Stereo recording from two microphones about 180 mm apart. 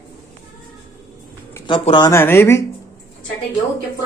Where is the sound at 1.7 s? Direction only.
25° left (ahead or behind).